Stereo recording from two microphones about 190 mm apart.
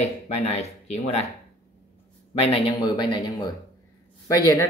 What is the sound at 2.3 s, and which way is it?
Speech, 30° left (ahead or behind).